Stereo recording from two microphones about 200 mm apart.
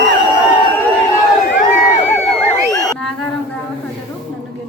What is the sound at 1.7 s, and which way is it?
Crowd, 40° left (ahead or behind).